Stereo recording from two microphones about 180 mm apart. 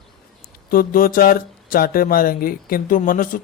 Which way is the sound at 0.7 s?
55° left (ahead or behind).